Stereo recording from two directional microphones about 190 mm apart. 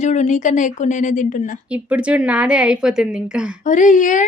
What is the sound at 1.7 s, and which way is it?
A woman's voice, 5° right (ahead or behind).